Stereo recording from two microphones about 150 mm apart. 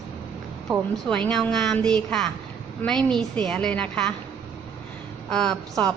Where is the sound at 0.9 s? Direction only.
5° left (ahead or behind).